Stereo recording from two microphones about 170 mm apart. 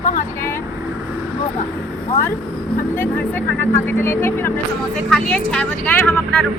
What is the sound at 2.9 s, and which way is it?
A woman's voice, 10° left (ahead or behind).